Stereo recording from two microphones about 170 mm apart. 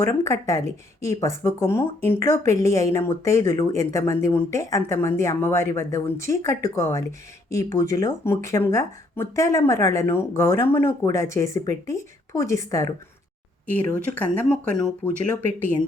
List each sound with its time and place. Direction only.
0.0 s speech: 15° left (ahead or behind)